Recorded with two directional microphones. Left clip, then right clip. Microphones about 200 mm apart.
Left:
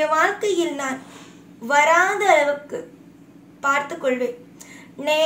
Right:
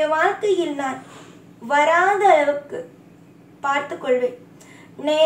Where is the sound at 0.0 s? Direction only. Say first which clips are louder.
Even; 50° left (ahead or behind).